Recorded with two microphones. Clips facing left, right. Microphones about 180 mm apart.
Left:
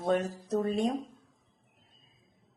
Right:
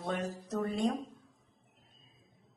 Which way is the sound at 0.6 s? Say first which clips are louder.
Left 2 dB; 20° left (ahead or behind).